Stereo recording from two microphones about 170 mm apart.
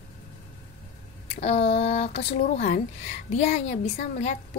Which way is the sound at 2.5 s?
50° left (ahead or behind).